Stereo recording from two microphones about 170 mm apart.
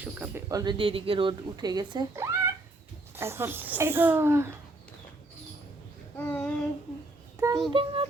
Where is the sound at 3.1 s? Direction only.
15° right (ahead or behind).